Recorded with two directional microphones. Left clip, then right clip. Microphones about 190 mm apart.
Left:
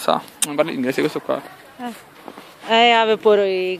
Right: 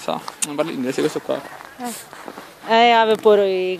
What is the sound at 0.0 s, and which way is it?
Speech, 35° left (ahead or behind).